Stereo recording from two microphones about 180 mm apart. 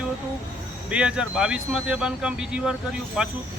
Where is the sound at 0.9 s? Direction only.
5° right (ahead or behind).